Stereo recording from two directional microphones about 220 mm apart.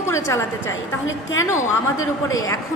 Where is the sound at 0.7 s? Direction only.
60° left (ahead or behind).